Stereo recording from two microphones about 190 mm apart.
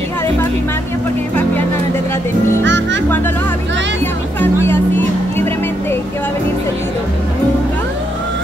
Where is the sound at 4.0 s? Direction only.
10° left (ahead or behind).